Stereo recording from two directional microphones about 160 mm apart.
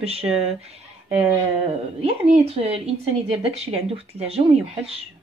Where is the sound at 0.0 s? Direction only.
40° right (ahead or behind).